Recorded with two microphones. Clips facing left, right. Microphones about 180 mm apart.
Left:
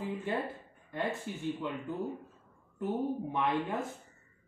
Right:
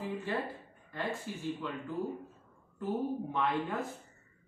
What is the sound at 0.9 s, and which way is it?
Speech, 20° left (ahead or behind).